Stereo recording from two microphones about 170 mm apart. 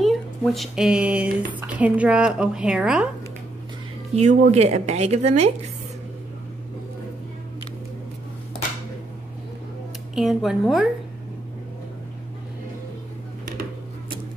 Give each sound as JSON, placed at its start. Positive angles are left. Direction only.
{"t": 0.0, "sound": "speech", "side_deg": 0}
{"t": 4.1, "sound": "speech", "side_deg": -40}
{"t": 10.1, "sound": "speech", "side_deg": 0}